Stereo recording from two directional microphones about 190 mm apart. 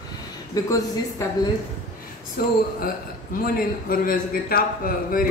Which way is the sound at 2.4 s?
50° left (ahead or behind).